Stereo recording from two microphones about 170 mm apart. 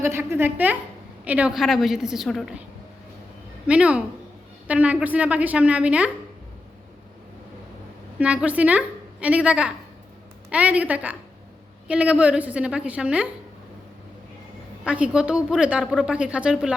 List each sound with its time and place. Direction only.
0.0 s a woman's voice: 15° right (ahead or behind)
3.7 s a woman's voice: 5° right (ahead or behind)
8.2 s a woman's voice: 5° right (ahead or behind)
14.8 s a woman's voice: 5° right (ahead or behind)